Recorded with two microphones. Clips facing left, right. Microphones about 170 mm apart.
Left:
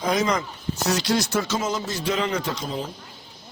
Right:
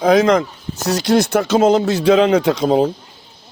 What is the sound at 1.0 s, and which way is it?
Speech, 55° right (ahead or behind).